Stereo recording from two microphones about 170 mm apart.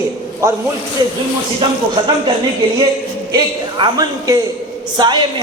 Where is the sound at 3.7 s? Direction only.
25° right (ahead or behind).